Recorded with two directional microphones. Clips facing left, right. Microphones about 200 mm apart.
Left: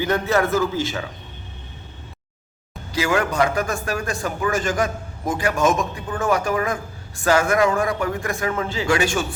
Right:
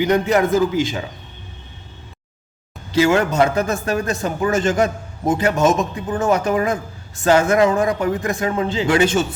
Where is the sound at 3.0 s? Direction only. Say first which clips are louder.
Right 5 dB; 25° right (ahead or behind).